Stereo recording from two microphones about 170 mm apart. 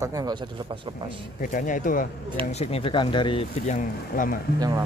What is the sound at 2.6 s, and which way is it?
Speech, 35° left (ahead or behind).